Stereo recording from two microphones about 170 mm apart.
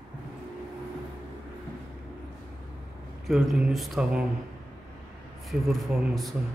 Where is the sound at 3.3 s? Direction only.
Centre (ahead or behind).